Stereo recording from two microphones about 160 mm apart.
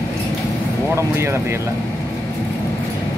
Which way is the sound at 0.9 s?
15° right (ahead or behind).